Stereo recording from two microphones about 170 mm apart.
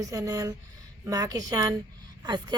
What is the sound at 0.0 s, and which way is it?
Speech, 20° right (ahead or behind).